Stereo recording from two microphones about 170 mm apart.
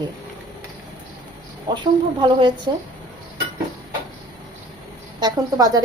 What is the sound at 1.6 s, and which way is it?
Speech, 30° right (ahead or behind).